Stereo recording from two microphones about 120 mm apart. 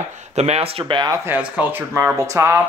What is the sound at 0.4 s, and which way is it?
Speech, 60° right (ahead or behind).